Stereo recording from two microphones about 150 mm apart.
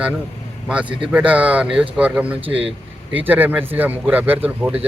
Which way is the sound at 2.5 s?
40° right (ahead or behind).